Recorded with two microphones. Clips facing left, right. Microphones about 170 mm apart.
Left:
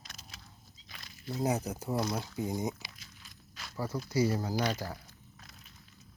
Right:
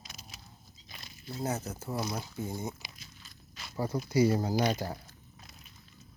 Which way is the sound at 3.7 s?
20° right (ahead or behind).